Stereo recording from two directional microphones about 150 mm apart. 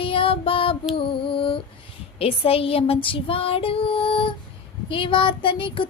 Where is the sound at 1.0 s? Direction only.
35° left (ahead or behind).